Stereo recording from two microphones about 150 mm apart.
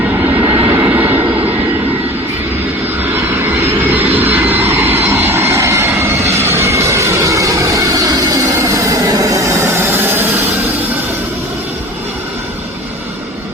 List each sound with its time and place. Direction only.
0.3 s vehicle: 10° right (ahead or behind)
3.2 s vehicle: 15° right (ahead or behind)
6.3 s train: 15° right (ahead or behind)